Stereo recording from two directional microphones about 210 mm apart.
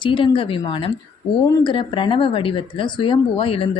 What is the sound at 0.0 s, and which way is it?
A woman's voice, 25° left (ahead or behind).